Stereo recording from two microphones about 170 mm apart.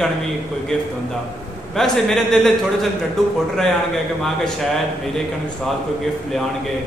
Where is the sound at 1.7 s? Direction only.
Centre (ahead or behind).